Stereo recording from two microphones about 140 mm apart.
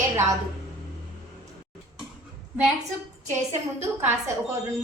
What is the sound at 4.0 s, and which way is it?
Speech, 15° right (ahead or behind).